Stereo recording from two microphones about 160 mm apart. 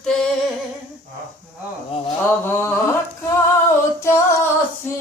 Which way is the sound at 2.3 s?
15° left (ahead or behind).